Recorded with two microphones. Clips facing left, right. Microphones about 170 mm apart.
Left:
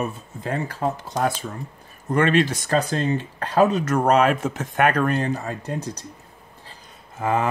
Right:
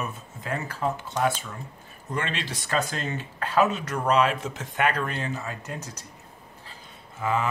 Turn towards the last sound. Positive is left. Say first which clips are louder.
# left 4 dB
turn(degrees=45)  # may be behind; listen again after turning